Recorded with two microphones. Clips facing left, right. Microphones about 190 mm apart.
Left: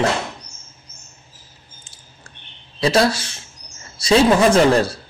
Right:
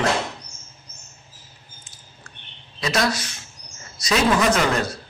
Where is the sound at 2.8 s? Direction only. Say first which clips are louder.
Left 6 dB; 30° left (ahead or behind).